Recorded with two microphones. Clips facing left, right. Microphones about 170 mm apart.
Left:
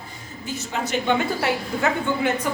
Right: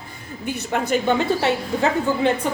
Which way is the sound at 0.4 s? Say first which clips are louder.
Right 5 dB; 55° right (ahead or behind).